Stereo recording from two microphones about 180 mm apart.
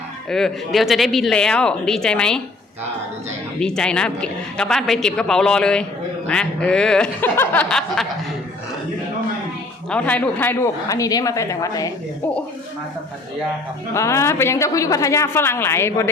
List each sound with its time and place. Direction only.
0.3 s a woman's voice: 5° left (ahead or behind)
3.6 s a woman's voice: 5° left (ahead or behind)
9.9 s a woman's voice: 10° left (ahead or behind)
13.9 s a woman's voice: 15° left (ahead or behind)